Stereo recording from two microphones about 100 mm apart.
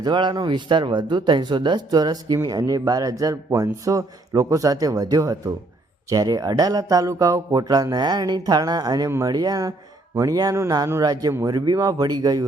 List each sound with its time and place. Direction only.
0.0 s speech: 50° right (ahead or behind)
9.0 s speech: 25° right (ahead or behind)
9.3 s speech: 40° right (ahead or behind)